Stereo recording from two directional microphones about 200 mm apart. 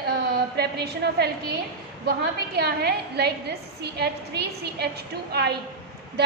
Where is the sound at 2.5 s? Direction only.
55° right (ahead or behind).